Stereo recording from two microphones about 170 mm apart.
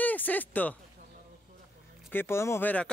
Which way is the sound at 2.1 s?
15° left (ahead or behind).